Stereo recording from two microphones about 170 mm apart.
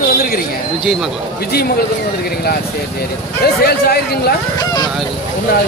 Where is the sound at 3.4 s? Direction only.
65° left (ahead or behind).